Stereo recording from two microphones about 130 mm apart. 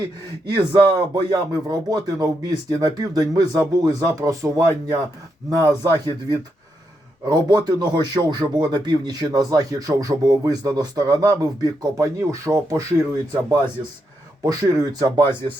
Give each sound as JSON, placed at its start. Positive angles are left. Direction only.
{"t": 0.4, "sound": "speech", "side_deg": -35}
{"t": 14.4, "sound": "speech", "side_deg": -25}